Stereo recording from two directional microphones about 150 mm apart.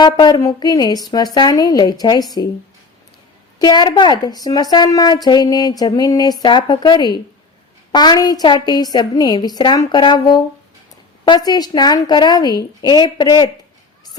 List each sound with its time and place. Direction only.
0.0 s a woman's voice: 30° left (ahead or behind)
3.6 s a woman's voice: 30° left (ahead or behind)